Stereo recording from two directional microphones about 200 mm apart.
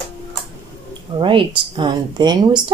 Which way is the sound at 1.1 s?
25° right (ahead or behind).